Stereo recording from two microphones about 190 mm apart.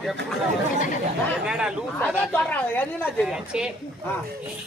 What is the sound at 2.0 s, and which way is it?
Speech, 10° left (ahead or behind).